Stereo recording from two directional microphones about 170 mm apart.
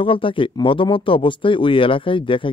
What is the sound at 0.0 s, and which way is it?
Speech, 30° left (ahead or behind).